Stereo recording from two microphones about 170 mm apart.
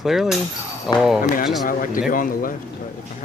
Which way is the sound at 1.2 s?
55° left (ahead or behind).